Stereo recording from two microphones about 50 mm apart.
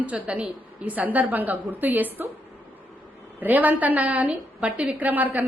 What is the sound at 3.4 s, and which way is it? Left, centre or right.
A woman's voice, right.